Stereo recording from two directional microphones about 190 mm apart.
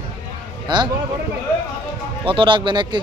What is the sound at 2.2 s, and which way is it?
Speech, 25° right (ahead or behind).